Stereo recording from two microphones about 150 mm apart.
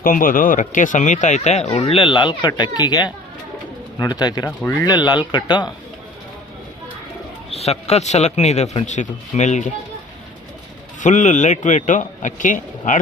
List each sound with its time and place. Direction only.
0.0 s speech: 70° left (ahead or behind); by 5.6 s 30° left (ahead or behind)
7.5 s a man's voice: 45° left (ahead or behind)
11.0 s speech: 55° left (ahead or behind)